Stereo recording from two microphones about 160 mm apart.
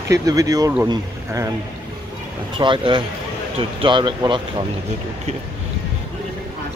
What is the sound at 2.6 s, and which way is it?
Speech, 30° right (ahead or behind).